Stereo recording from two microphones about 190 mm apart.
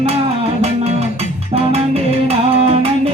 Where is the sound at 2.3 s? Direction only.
30° right (ahead or behind).